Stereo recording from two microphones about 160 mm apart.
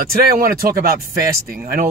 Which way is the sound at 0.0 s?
70° right (ahead or behind).